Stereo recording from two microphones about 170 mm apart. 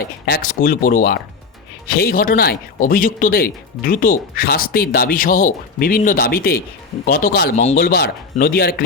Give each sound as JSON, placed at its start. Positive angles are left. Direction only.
{"t": 0.3, "sound": "speech", "side_deg": 55}
{"t": 7.5, "sound": "speech", "side_deg": 40}
{"t": 7.8, "sound": "speech", "side_deg": 70}